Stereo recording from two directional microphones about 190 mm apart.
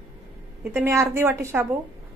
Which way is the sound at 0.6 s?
10° right (ahead or behind).